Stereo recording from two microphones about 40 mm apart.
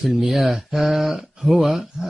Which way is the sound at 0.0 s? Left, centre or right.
Centre.